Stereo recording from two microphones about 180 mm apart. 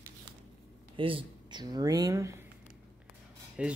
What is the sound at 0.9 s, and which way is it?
Speech, 30° right (ahead or behind).